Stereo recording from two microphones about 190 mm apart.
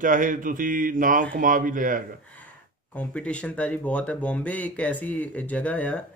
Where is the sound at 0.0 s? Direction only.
45° right (ahead or behind).